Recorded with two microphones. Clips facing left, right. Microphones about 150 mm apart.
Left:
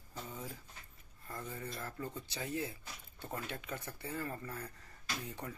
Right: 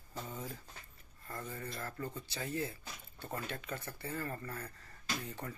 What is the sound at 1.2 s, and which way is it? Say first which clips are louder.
Speech: even; 10° left (ahead or behind).